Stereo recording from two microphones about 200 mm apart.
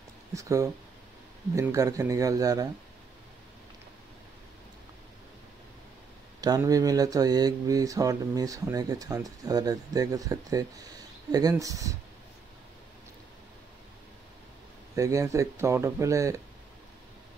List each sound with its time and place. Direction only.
0.3 s speech: 15° right (ahead or behind)
6.4 s speech: 20° right (ahead or behind)
15.0 s speech: 15° right (ahead or behind)